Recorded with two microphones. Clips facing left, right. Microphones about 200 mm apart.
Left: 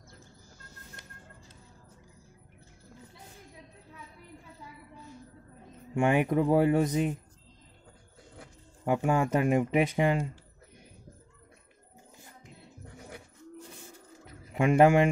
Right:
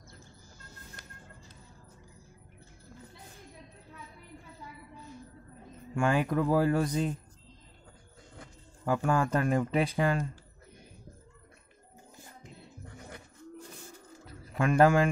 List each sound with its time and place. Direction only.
5.9 s speech: 20° left (ahead or behind)
8.8 s speech: 20° left (ahead or behind)
12.8 s music: 5° left (ahead or behind)
14.2 s bird: 20° left (ahead or behind)